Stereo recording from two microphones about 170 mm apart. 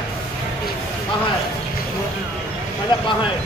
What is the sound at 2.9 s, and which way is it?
Speech, 25° left (ahead or behind).